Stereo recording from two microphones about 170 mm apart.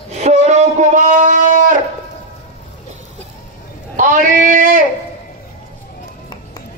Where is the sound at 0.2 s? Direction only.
40° right (ahead or behind).